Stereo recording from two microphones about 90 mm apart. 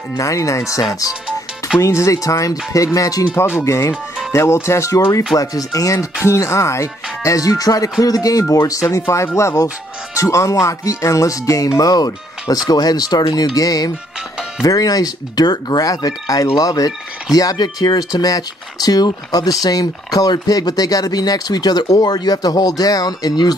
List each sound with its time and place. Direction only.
0.2 s speech: 35° left (ahead or behind)
3.3 s speech: 30° left (ahead or behind); by 23.5 s 45° left (ahead or behind)